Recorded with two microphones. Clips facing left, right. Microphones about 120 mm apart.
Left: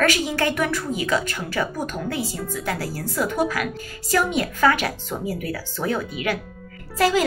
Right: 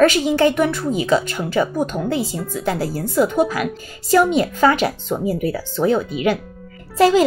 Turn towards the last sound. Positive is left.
turn(degrees=-25)  # may be behind; listen again after turning